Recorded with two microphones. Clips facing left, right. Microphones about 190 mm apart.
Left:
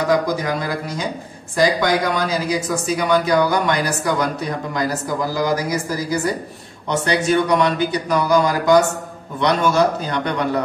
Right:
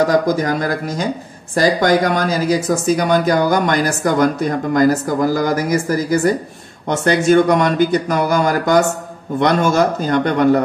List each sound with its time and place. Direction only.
0.1 s speech: 45° right (ahead or behind)